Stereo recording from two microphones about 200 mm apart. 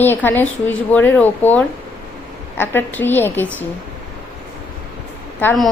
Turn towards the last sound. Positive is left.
turn(degrees=10)  # may be behind; listen again after turning